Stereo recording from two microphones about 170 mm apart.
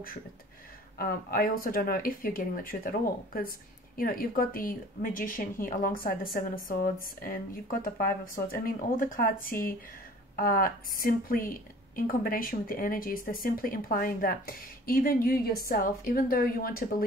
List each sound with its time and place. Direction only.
0.9 s speech: 60° left (ahead or behind)